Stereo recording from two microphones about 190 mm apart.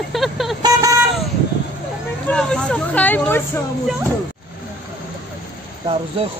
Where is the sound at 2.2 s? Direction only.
5° left (ahead or behind).